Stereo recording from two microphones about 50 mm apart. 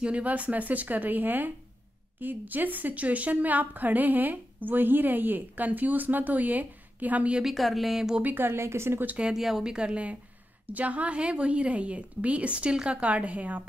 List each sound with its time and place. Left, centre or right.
0.0 s a woman's voice: right
7.4 s speech: centre
8.2 s a woman's voice: right
8.5 s speech: right
9.3 s a woman's voice: centre; by 13.7 s right